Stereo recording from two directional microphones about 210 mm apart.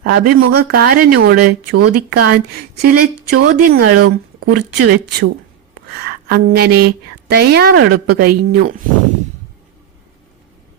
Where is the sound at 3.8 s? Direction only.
90° right.